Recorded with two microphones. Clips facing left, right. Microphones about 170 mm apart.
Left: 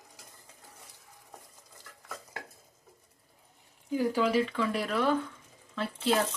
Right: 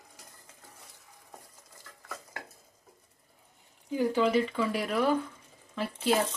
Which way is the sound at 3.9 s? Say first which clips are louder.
Right 1 dB; 5° left (ahead or behind).